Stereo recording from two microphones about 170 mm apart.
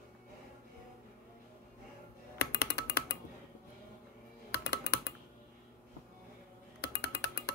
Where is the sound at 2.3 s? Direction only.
75° left (ahead or behind).